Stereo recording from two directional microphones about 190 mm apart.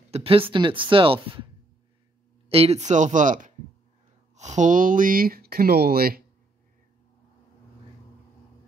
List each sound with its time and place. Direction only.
0.1 s speech: 30° right (ahead or behind)
2.5 s speech: 35° right (ahead or behind); by 6.2 s 50° right (ahead or behind)